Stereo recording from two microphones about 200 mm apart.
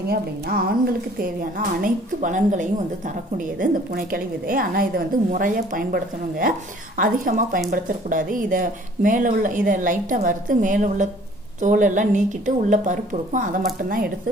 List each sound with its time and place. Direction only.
0.1 s a woman's voice: 50° right (ahead or behind)